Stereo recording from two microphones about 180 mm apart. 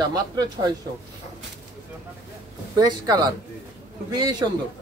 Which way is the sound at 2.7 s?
20° right (ahead or behind).